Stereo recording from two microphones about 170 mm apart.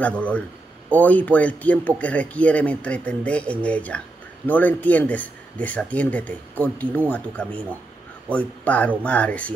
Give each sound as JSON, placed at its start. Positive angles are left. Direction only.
{"t": 0.0, "sound": "speech", "side_deg": 10}